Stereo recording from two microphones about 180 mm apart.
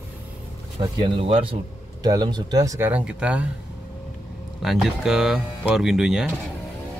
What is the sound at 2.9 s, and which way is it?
Speech, 5° right (ahead or behind).